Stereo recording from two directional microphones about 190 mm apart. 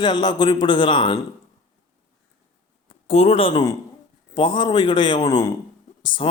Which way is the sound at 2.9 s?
30° left (ahead or behind).